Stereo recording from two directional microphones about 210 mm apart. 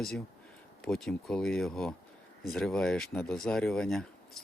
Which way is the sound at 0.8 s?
Centre (ahead or behind).